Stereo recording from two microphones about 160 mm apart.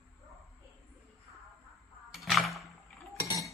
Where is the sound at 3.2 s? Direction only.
25° left (ahead or behind).